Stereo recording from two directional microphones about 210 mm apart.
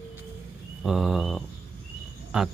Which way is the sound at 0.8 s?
Centre (ahead or behind).